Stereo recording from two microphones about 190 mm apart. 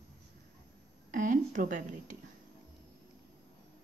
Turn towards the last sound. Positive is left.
turn(degrees=-45)  # may be behind; listen again after turning